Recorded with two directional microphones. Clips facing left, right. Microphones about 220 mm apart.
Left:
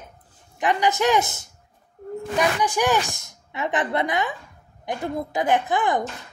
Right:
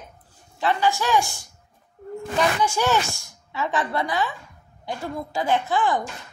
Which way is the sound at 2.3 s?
15° left (ahead or behind).